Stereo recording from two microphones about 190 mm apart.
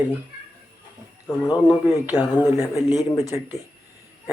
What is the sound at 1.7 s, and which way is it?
Speech, 20° left (ahead or behind).